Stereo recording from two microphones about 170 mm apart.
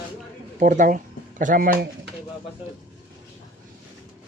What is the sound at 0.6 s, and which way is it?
Speech, 50° right (ahead or behind).